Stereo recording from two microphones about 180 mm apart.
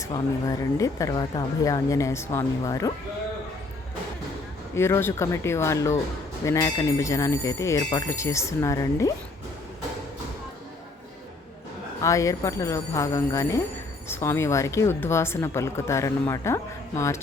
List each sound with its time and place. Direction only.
0.0 s speech: 20° left (ahead or behind)
4.7 s speech: 15° left (ahead or behind)
12.0 s speech: 15° left (ahead or behind)